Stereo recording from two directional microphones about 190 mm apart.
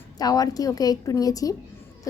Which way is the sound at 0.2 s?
20° left (ahead or behind).